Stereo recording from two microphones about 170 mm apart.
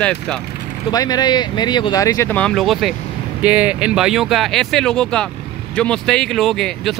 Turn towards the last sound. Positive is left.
turn(degrees=0)  # may be behind; listen again after turning